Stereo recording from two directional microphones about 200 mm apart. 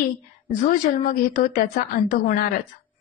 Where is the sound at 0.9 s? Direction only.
45° left (ahead or behind).